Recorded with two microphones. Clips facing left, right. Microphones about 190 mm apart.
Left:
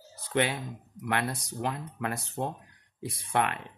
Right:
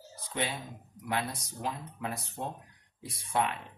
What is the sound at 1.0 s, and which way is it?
Speech, 70° left (ahead or behind).